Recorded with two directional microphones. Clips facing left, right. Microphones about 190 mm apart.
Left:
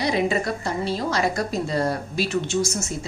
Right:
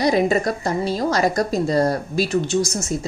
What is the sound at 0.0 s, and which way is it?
Speech, 45° right (ahead or behind).